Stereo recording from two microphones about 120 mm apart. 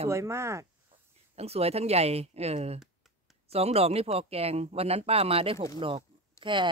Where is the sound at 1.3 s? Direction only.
60° right (ahead or behind).